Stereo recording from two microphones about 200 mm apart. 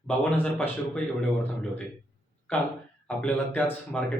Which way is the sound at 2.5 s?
10° left (ahead or behind).